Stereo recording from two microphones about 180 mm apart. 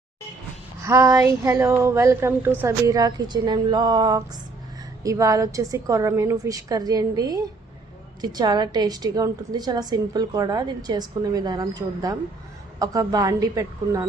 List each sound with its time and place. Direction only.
0.8 s a woman's voice: 15° right (ahead or behind)